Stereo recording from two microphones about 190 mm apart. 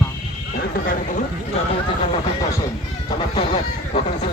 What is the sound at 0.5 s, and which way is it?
Speech, 50° left (ahead or behind).